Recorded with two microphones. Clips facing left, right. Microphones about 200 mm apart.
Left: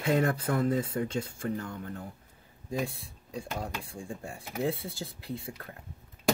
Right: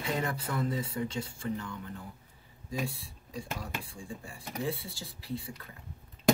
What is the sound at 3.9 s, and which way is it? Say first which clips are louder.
Speech: left 4 dB; 55° left (ahead or behind).